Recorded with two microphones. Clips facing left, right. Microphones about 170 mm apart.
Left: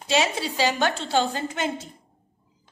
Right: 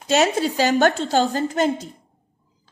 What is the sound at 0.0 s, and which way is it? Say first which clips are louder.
A woman's voice: right 5 dB; 45° right (ahead or behind).